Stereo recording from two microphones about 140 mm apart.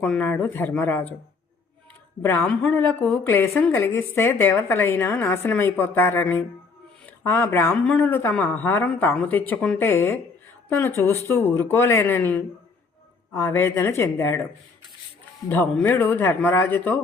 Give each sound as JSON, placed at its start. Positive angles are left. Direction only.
{"t": 0.0, "sound": "a woman's voice", "side_deg": 10}
{"t": 2.2, "sound": "a woman's voice", "side_deg": 15}
{"t": 15.4, "sound": "a woman's voice", "side_deg": 15}